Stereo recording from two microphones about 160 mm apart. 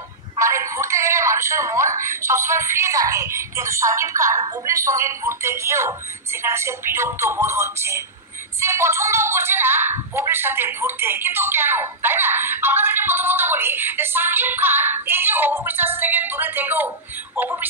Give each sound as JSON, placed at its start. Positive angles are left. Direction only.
{"t": 0.4, "sound": "a woman's voice", "side_deg": -20}